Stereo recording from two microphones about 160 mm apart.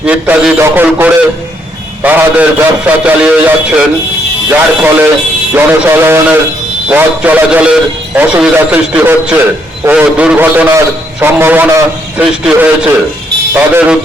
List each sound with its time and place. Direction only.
0.0 s a man's voice: 5° right (ahead or behind)